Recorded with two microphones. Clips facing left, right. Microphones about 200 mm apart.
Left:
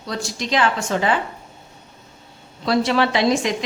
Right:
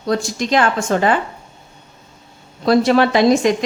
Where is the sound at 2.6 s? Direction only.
45° right (ahead or behind).